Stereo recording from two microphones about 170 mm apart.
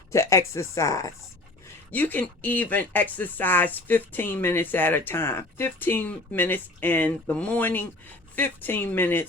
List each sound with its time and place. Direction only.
0.1 s speech: 15° left (ahead or behind)